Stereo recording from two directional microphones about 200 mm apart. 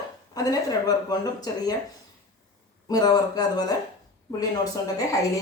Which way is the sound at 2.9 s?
20° left (ahead or behind).